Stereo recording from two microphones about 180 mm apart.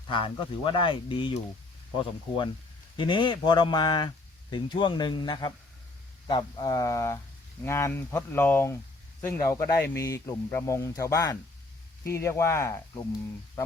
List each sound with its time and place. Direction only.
0.1 s speech: 30° left (ahead or behind)